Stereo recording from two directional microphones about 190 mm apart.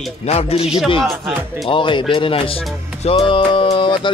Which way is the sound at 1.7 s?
25° left (ahead or behind).